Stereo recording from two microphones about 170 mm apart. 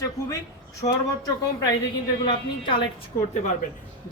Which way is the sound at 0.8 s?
20° left (ahead or behind).